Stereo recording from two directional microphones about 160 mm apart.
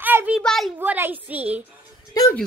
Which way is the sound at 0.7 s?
15° right (ahead or behind).